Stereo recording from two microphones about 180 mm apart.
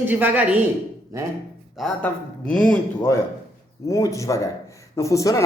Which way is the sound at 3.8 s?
15° left (ahead or behind).